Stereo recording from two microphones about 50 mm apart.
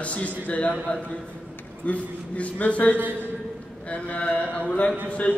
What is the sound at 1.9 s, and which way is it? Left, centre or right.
A man's voice, left.